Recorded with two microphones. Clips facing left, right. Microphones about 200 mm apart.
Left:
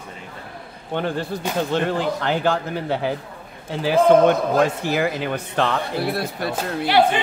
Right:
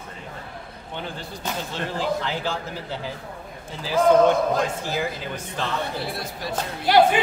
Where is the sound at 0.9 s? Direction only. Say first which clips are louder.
Left 10 dB; 60° left (ahead or behind).